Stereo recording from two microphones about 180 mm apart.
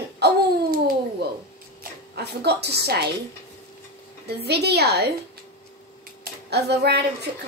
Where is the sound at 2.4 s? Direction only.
65° right (ahead or behind).